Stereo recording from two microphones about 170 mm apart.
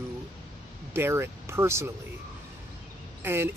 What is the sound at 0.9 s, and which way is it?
Speech, 15° right (ahead or behind).